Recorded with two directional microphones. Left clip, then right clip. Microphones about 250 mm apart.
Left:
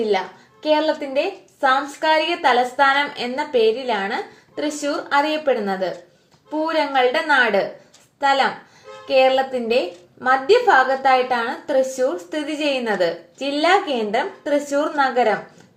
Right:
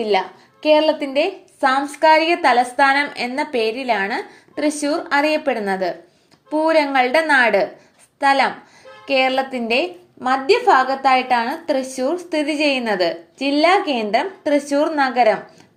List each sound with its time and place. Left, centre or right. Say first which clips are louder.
0.7 s a woman's voice: right 4 dB; right